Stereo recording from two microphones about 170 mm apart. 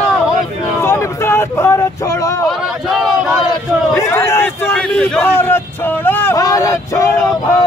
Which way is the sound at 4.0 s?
15° left (ahead or behind).